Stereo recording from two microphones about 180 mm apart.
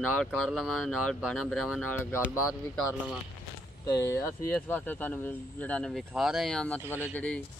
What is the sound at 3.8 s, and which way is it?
Speech, 15° left (ahead or behind).